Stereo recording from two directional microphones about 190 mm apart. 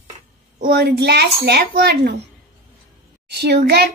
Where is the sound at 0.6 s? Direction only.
60° right (ahead or behind).